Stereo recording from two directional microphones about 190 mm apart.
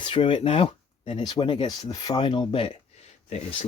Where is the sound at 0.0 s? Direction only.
25° left (ahead or behind).